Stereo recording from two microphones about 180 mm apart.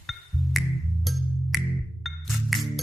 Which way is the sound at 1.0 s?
Centre (ahead or behind).